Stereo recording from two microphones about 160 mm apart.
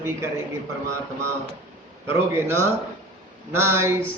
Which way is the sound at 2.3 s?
15° right (ahead or behind).